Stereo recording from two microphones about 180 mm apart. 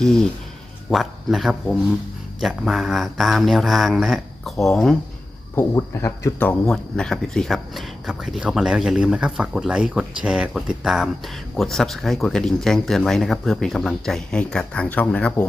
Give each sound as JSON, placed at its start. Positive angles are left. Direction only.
{"t": 0.9, "sound": "speech", "side_deg": 0}
{"t": 5.5, "sound": "speech", "side_deg": 15}
{"t": 6.7, "sound": "speech", "side_deg": 5}